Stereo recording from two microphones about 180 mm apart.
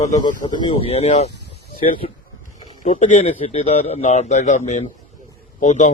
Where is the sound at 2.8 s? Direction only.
40° left (ahead or behind).